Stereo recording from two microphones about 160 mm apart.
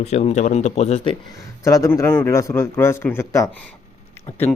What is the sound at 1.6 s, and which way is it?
Speech, 20° left (ahead or behind).